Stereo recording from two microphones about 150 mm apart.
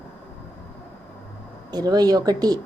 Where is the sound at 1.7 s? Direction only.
25° right (ahead or behind).